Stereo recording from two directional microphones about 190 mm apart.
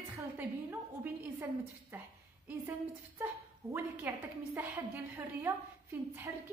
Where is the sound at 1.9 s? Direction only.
10° right (ahead or behind).